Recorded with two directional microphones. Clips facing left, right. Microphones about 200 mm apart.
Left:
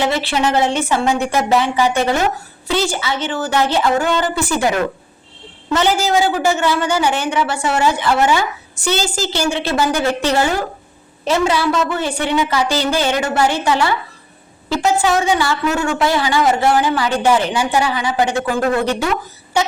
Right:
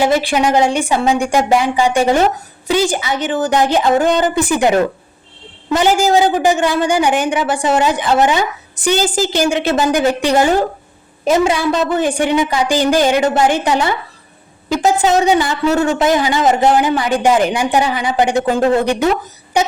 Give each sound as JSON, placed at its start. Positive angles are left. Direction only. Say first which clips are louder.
{"t": 0.2, "sound": "a woman's voice", "louder": "right 3 dB", "side_deg": -15}